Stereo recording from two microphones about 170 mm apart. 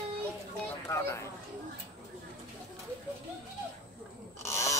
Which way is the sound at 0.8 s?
15° left (ahead or behind).